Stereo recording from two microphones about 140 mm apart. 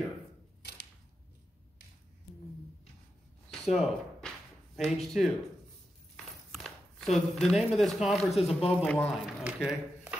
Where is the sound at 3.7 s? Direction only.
5° right (ahead or behind).